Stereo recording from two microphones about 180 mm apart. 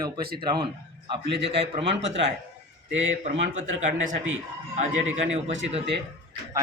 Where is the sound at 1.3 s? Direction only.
75° right (ahead or behind).